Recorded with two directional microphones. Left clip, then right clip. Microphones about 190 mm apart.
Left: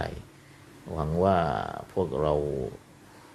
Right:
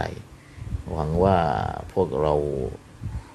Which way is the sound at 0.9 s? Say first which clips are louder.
Right 4 dB; 5° right (ahead or behind).